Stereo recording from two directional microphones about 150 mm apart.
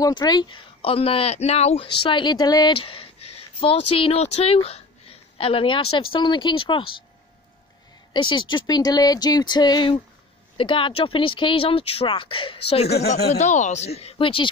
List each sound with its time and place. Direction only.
0.0 s speech: 30° left (ahead or behind)
8.1 s speech: 30° left (ahead or behind)
13.3 s speech: 55° left (ahead or behind); by 14.5 s 35° left (ahead or behind)